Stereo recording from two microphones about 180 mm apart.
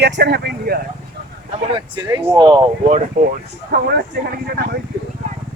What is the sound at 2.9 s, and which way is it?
Speech, 40° right (ahead or behind).